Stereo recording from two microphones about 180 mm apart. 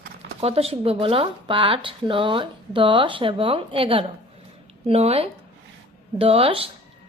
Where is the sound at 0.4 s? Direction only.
35° right (ahead or behind).